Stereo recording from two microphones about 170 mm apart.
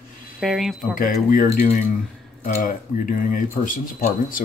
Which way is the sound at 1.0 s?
55° left (ahead or behind).